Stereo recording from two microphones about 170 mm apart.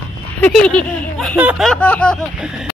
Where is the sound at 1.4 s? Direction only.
10° right (ahead or behind).